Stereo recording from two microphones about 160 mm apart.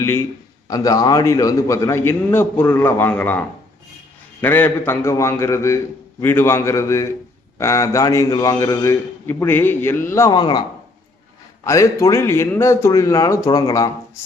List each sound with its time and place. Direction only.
0.7 s a man's voice: 20° left (ahead or behind)
10.3 s a man's voice: 30° left (ahead or behind)
11.6 s a man's voice: 20° left (ahead or behind)